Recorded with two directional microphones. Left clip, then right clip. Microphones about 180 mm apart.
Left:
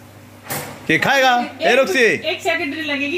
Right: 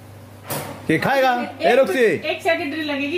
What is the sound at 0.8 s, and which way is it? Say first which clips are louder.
A man's voice: left 3 dB; 15° right (ahead or behind).